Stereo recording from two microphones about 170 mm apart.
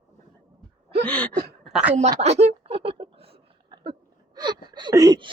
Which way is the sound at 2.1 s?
40° right (ahead or behind).